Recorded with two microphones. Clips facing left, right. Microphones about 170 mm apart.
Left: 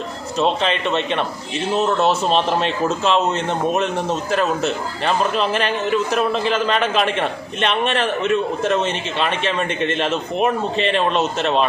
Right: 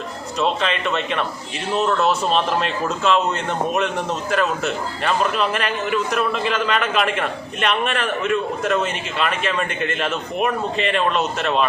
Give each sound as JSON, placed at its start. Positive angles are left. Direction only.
{"t": 0.6, "sound": "a man's voice", "side_deg": 30}